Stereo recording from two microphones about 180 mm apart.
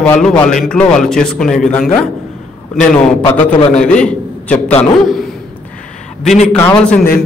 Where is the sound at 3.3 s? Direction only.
40° left (ahead or behind).